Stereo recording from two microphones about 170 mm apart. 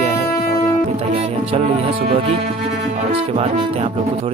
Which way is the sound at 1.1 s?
35° right (ahead or behind).